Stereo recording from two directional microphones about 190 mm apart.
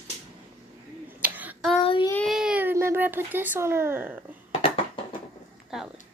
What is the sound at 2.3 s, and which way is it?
Baby cry, 5° right (ahead or behind).